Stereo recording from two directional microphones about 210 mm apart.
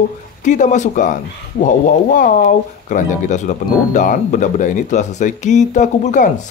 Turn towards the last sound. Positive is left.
turn(degrees=35)  # may be behind; listen again after turning